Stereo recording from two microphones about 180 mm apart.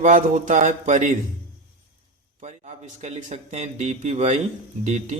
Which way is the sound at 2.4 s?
40° right (ahead or behind).